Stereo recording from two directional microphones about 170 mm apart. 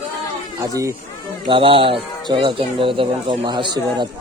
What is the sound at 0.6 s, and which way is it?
Speech, 20° right (ahead or behind).